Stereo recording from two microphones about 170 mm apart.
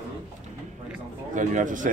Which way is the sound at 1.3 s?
45° right (ahead or behind).